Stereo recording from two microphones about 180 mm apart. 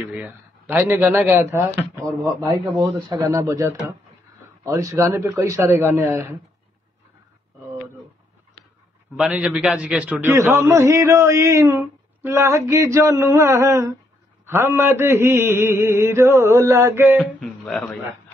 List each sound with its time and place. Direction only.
0.1 s speech: 5° right (ahead or behind)
9.1 s a man's voice: 5° right (ahead or behind)
17.2 s a man's voice: 5° left (ahead or behind)